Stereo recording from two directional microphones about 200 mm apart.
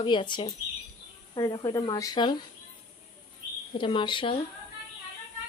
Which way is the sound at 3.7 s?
25° left (ahead or behind).